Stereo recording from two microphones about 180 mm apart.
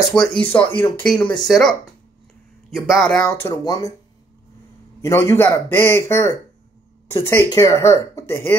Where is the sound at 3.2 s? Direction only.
20° left (ahead or behind).